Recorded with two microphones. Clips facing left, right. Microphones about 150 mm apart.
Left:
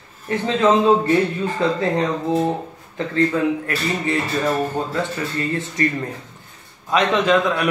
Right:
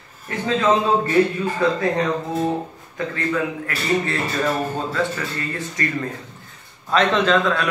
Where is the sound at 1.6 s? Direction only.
20° left (ahead or behind).